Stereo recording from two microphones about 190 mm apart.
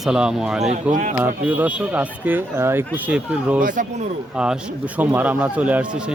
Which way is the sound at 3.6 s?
45° right (ahead or behind).